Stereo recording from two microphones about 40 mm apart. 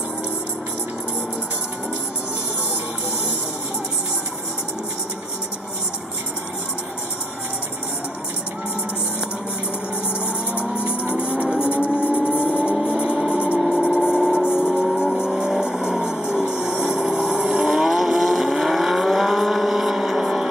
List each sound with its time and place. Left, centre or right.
10.6 s music: right
12.7 s a sound: right
13.3 s music: right
13.6 s music: centre
15.1 s vehicle: centre